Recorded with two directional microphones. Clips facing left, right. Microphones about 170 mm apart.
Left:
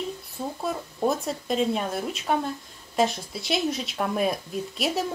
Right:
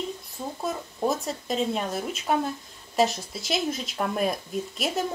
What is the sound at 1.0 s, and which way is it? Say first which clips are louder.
Speech: left 1 dB; centre (ahead or behind).